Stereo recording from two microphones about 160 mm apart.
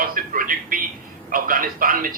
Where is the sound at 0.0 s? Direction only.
60° right (ahead or behind).